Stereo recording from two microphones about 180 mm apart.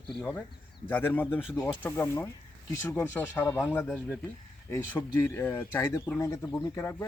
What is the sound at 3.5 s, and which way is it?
Speech, centre (ahead or behind).